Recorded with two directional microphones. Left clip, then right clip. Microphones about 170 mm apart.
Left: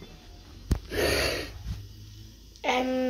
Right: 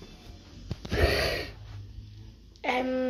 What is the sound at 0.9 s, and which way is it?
Gasp, 5° right (ahead or behind).